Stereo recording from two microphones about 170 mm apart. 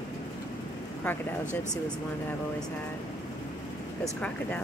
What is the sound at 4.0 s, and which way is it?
Speech, 10° left (ahead or behind).